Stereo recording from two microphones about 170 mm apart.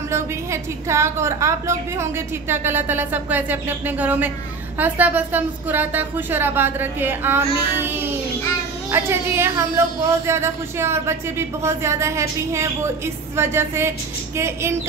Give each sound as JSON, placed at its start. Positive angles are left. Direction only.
{"t": 0.1, "sound": "speech", "side_deg": -15}
{"t": 7.8, "sound": "child singing", "side_deg": -10}
{"t": 8.9, "sound": "speech", "side_deg": -15}